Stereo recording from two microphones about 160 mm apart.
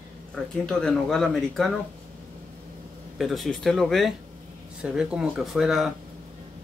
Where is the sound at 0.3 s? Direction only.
5° left (ahead or behind).